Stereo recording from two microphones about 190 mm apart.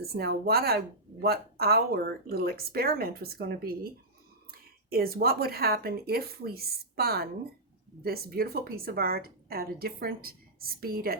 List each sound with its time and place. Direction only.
0.0 s a woman's voice: 55° right (ahead or behind)